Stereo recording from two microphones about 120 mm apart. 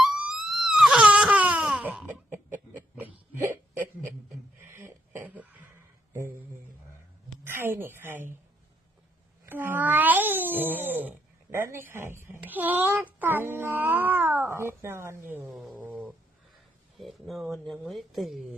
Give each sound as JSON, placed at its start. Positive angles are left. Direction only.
{"t": 0.0, "sound": "crying", "side_deg": -5}
{"t": 2.9, "sound": "a sound", "side_deg": -15}
{"t": 4.6, "sound": "cough", "side_deg": -20}
{"t": 7.4, "sound": "a woman's voice", "side_deg": -20}
{"t": 9.5, "sound": "a child's voice", "side_deg": -15}
{"t": 15.5, "sound": "cat", "side_deg": -5}
{"t": 17.0, "sound": "speech", "side_deg": 0}